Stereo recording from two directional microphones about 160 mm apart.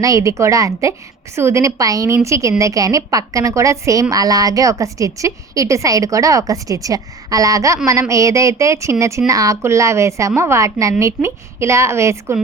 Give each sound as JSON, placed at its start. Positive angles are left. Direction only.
{"t": 0.0, "sound": "a woman's voice", "side_deg": -20}